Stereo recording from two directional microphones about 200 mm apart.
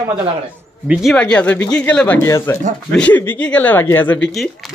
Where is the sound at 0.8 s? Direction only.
Centre (ahead or behind).